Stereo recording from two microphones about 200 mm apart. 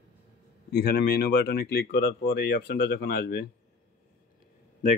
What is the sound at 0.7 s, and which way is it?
Speech, 50° left (ahead or behind).